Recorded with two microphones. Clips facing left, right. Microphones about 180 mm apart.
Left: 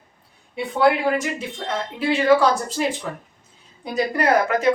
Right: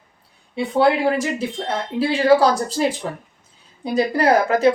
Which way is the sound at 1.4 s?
35° right (ahead or behind).